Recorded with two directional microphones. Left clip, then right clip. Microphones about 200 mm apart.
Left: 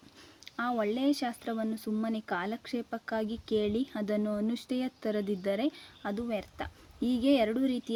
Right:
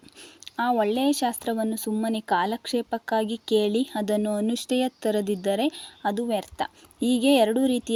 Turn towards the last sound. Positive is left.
turn(degrees=-20)  # may be behind; listen again after turning